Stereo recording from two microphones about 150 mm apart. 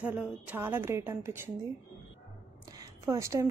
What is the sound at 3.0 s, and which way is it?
Speech, 20° right (ahead or behind).